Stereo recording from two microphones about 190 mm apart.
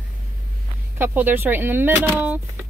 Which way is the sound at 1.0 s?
10° right (ahead or behind).